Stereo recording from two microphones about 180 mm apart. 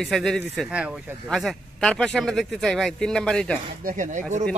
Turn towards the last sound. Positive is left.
turn(degrees=-45)  # may be behind; listen again after turning